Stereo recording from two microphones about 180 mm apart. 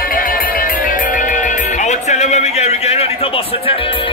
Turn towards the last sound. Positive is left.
turn(degrees=30)  # may be behind; listen again after turning